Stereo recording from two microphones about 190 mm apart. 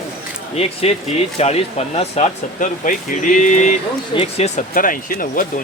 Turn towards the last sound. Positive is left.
turn(degrees=45)  # may be behind; listen again after turning